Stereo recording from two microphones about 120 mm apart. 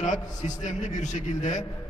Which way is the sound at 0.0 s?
85° left.